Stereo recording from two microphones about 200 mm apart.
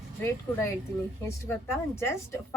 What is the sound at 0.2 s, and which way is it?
A woman's voice, 15° left (ahead or behind).